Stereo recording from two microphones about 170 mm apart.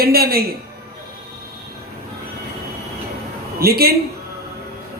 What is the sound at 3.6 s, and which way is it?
Speech, 65° right (ahead or behind).